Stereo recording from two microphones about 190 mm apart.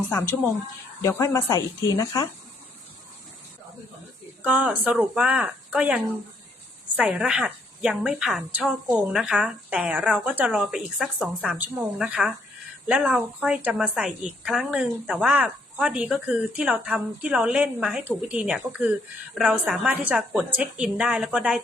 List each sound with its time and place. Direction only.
0.1 s speech: 10° left (ahead or behind)
4.4 s a woman's voice: 5° right (ahead or behind)